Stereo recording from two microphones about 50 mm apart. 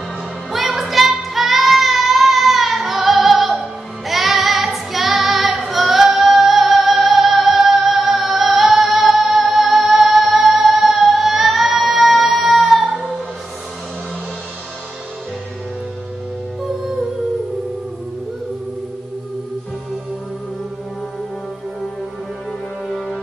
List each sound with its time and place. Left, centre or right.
0.5 s child singing: centre
22.8 s french horn: centre